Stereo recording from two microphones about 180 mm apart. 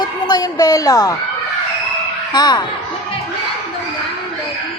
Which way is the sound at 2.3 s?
25° left (ahead or behind).